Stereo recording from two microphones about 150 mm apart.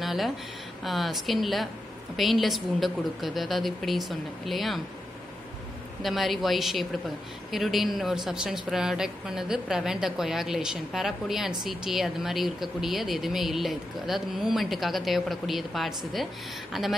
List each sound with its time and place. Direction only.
0.0 s a sound: centre (ahead or behind)
0.8 s a woman's voice: centre (ahead or behind)
6.0 s a woman's voice: centre (ahead or behind)